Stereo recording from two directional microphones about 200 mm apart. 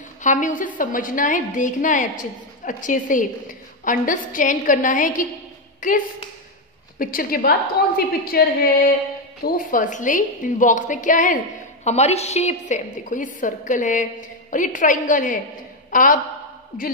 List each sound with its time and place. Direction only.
0.2 s a woman's voice: 40° left (ahead or behind)